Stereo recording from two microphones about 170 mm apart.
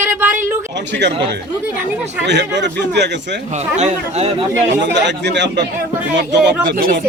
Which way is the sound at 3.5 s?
40° right (ahead or behind).